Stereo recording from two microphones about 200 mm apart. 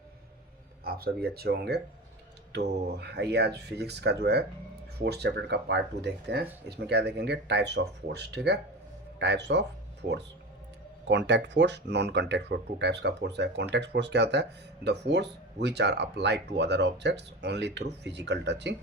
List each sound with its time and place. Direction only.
0.9 s speech: 50° right (ahead or behind)
11.1 s speech: 60° right (ahead or behind)